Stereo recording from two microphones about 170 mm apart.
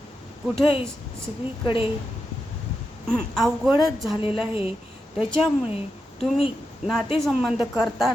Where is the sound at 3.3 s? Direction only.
Centre (ahead or behind).